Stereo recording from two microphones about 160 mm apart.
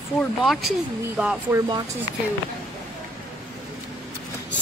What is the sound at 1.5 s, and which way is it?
Speech, 20° right (ahead or behind).